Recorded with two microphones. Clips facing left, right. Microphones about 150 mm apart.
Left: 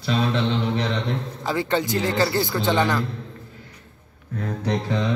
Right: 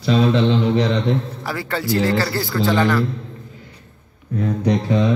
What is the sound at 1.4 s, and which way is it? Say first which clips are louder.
Speech: left 2 dB; 20° left (ahead or behind).